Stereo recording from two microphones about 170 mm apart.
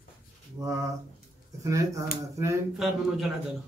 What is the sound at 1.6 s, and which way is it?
Speech, 20° right (ahead or behind).